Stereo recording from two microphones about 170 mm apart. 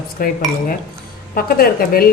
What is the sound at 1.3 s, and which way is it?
Speech, 60° left (ahead or behind).